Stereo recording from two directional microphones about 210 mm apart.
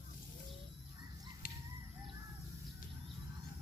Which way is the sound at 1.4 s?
40° left (ahead or behind).